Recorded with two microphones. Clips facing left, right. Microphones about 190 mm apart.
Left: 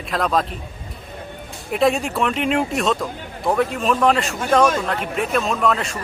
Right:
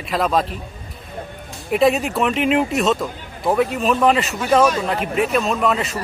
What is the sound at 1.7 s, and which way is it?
A man's voice, centre (ahead or behind).